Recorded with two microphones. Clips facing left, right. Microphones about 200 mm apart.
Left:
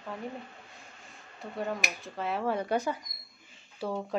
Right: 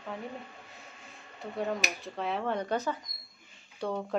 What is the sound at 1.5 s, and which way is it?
Speech, centre (ahead or behind).